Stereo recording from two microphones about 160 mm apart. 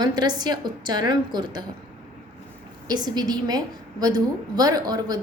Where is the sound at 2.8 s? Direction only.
25° right (ahead or behind).